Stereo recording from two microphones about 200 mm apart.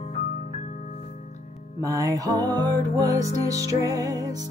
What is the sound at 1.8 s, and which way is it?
Music, 15° right (ahead or behind).